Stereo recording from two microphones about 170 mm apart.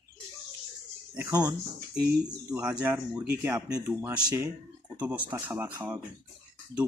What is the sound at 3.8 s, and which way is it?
Speech, 10° right (ahead or behind).